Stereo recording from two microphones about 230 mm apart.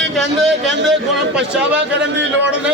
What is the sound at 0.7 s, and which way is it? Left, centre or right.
Speech, right.